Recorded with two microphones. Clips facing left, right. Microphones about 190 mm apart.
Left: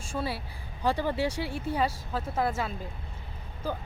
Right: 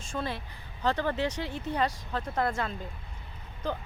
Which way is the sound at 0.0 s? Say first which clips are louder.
Left 1 dB; 10° left (ahead or behind).